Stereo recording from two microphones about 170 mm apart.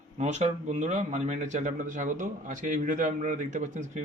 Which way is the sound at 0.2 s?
45° right (ahead or behind).